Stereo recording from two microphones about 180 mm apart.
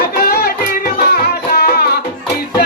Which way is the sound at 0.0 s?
60° left (ahead or behind).